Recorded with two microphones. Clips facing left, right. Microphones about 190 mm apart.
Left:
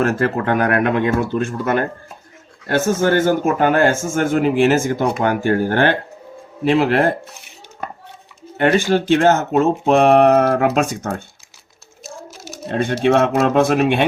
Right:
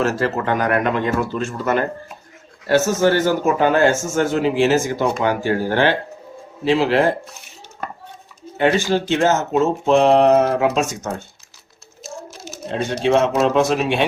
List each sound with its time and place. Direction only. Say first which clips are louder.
0.0 s a man's voice: left 2 dB; 50° left (ahead or behind)
8.5 s speech: left 2 dB; 55° left (ahead or behind)
12.6 s speech: left 3 dB; 55° left (ahead or behind)